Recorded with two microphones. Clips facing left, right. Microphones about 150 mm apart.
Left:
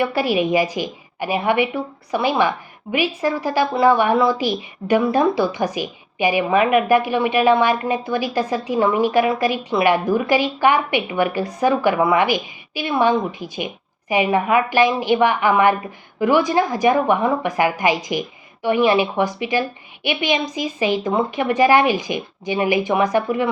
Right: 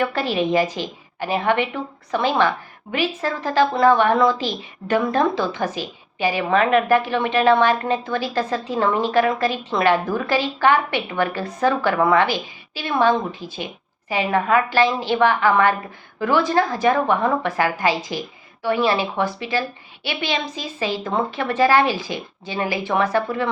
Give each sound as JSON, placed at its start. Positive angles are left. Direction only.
{"t": 0.0, "sound": "speech", "side_deg": 10}